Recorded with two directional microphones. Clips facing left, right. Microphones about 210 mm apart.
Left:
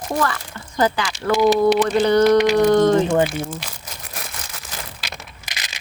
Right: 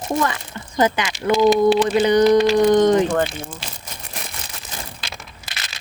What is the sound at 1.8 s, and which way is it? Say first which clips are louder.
Speech: even; 10° right (ahead or behind).